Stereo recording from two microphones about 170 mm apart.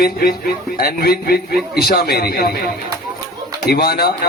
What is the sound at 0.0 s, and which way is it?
A man's voice, 60° left (ahead or behind).